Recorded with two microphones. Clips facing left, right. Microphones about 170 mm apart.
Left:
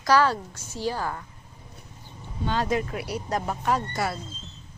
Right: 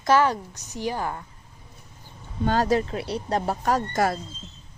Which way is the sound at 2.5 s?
40° right (ahead or behind).